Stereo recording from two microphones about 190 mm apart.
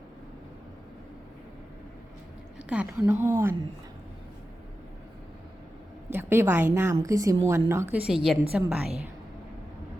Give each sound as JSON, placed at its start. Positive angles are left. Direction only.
{"t": 2.6, "sound": "a woman's voice", "side_deg": -5}
{"t": 6.1, "sound": "a woman's voice", "side_deg": -10}